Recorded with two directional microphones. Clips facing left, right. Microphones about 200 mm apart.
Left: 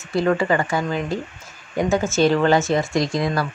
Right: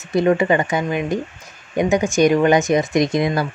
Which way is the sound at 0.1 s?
20° right (ahead or behind).